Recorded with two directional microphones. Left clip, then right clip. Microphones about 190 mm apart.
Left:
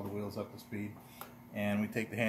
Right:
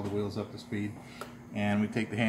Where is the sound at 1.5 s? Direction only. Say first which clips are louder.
Right 4 dB; 20° left (ahead or behind).